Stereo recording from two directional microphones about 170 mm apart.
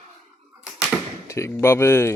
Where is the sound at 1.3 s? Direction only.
15° left (ahead or behind).